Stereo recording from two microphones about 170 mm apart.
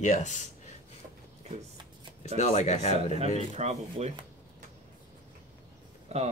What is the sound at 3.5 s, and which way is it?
Speech, 40° right (ahead or behind).